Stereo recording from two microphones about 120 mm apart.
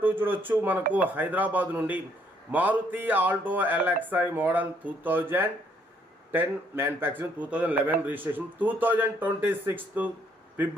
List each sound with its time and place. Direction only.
0.0 s speech: 15° right (ahead or behind)